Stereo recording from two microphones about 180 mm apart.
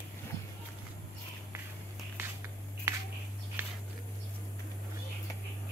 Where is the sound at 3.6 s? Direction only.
10° right (ahead or behind).